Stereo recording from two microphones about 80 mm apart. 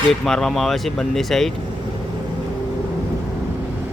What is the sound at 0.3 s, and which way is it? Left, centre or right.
Speech, centre.